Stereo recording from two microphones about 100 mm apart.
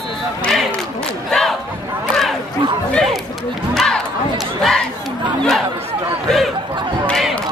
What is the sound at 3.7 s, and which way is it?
Crowd, 5° left (ahead or behind).